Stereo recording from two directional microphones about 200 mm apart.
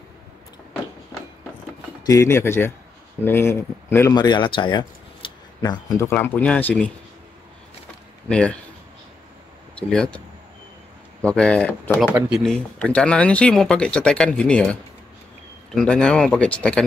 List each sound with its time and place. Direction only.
2.0 s speech: 15° left (ahead or behind)
6.1 s speech: 10° left (ahead or behind)
8.3 s speech: 5° left (ahead or behind)
9.8 s speech: 5° left (ahead or behind)